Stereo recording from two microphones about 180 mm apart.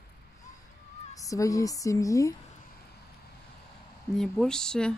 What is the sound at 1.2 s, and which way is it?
Speech, 20° left (ahead or behind).